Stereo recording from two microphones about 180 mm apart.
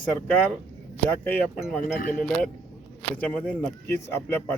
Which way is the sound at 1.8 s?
50° left (ahead or behind).